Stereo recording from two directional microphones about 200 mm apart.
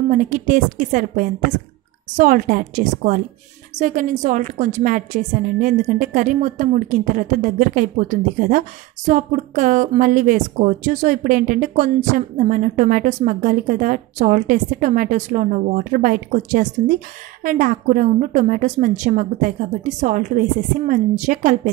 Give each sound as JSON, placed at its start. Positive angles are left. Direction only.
{"t": 0.1, "sound": "a woman's voice", "side_deg": -40}